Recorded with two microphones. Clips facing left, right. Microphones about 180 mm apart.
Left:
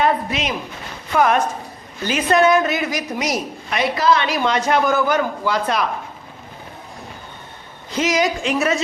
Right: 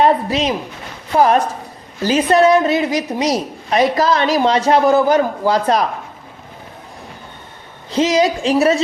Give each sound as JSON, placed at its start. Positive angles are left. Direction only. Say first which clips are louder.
{"t": 0.0, "sound": "a woman's voice", "louder": "right 5 dB", "side_deg": -35}
{"t": 7.9, "sound": "a woman's voice", "louder": "right 5 dB", "side_deg": -30}